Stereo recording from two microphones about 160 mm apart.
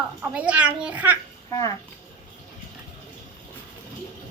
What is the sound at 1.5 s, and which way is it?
Speech, 20° left (ahead or behind).